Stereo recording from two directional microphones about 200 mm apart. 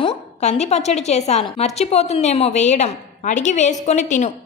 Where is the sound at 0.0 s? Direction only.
35° left (ahead or behind).